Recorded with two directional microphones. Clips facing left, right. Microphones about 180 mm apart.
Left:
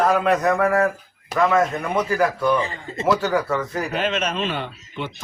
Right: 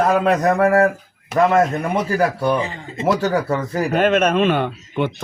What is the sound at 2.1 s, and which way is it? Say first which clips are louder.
A man's voice: right 1 dB; 35° right (ahead or behind).